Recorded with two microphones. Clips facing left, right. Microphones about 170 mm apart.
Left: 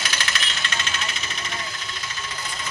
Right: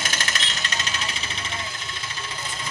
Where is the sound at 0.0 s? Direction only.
45° right (ahead or behind).